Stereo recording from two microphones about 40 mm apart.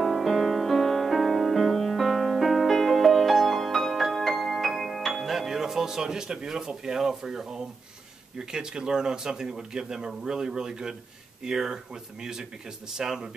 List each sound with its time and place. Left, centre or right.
0.0 s music: centre
5.2 s speech: centre